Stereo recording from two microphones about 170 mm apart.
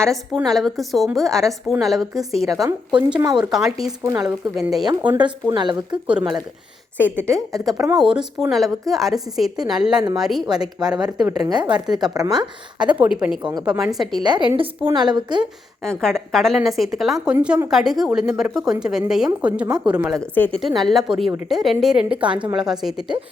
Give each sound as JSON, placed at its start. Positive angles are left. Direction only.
{"t": 0.3, "sound": "a woman's voice", "side_deg": 0}
{"t": 4.0, "sound": "speech", "side_deg": -20}
{"t": 4.5, "sound": "a woman's voice", "side_deg": 0}
{"t": 4.9, "sound": "speech", "side_deg": -25}
{"t": 6.9, "sound": "speech", "side_deg": -10}
{"t": 7.5, "sound": "a woman's voice", "side_deg": 0}
{"t": 11.4, "sound": "speech", "side_deg": -25}
{"t": 12.8, "sound": "a woman's voice", "side_deg": -5}
{"t": 13.4, "sound": "speech", "side_deg": -25}
{"t": 13.7, "sound": "a woman's voice", "side_deg": -5}
{"t": 14.2, "sound": "speech", "side_deg": -25}
{"t": 15.8, "sound": "a woman's voice", "side_deg": 5}
{"t": 20.2, "sound": "a woman's voice", "side_deg": 10}